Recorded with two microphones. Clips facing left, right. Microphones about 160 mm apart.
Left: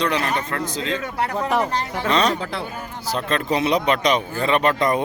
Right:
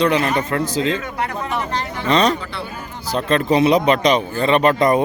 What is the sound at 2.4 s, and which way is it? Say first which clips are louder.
Speech: left 2 dB; 90° left.